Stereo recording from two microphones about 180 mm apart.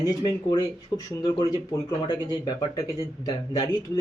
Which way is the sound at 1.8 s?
25° left (ahead or behind).